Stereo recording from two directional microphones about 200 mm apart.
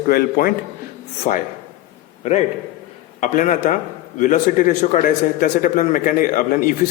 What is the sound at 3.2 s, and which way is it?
A man's voice, 40° left (ahead or behind).